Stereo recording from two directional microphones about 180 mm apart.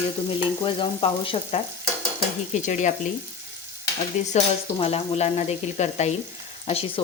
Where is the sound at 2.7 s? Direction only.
45° left (ahead or behind).